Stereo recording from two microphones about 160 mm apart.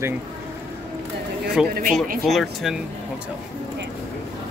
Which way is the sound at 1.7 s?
60° right (ahead or behind).